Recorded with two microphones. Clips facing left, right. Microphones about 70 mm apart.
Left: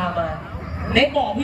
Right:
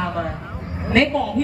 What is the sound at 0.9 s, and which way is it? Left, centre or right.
Speech, right.